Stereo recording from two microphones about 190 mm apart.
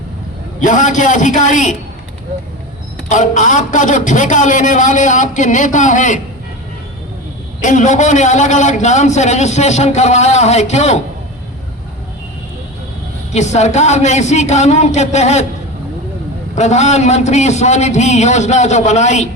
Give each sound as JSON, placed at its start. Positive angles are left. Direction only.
{"t": 0.6, "sound": "a man's voice", "side_deg": 40}
{"t": 3.1, "sound": "a man's voice", "side_deg": 40}
{"t": 7.6, "sound": "a man's voice", "side_deg": 40}
{"t": 13.3, "sound": "a man's voice", "side_deg": 35}
{"t": 16.6, "sound": "a man's voice", "side_deg": 35}